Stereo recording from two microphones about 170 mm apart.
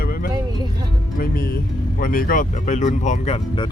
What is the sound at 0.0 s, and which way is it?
Vehicle, 60° left (ahead or behind).